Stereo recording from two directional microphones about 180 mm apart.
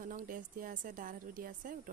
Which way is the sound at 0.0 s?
45° right (ahead or behind).